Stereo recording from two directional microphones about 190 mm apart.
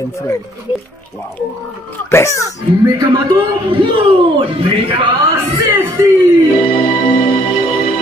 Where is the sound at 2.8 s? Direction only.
20° right (ahead or behind).